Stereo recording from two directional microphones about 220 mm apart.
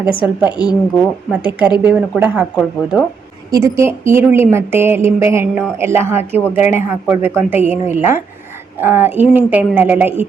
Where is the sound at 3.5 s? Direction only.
10° right (ahead or behind).